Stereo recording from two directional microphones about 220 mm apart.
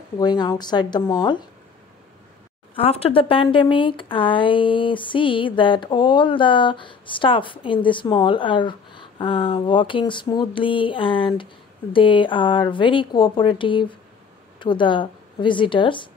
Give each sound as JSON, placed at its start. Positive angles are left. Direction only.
{"t": 0.2, "sound": "speech", "side_deg": 20}
{"t": 2.7, "sound": "speech", "side_deg": 25}